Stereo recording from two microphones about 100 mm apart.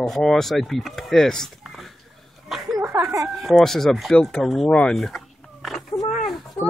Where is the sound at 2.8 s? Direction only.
30° right (ahead or behind).